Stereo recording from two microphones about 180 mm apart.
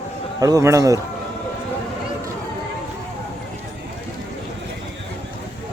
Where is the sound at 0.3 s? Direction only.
20° right (ahead or behind).